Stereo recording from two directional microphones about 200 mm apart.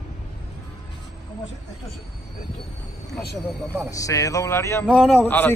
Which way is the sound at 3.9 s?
15° left (ahead or behind).